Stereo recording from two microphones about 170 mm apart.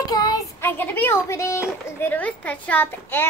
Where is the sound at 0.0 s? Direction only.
20° left (ahead or behind).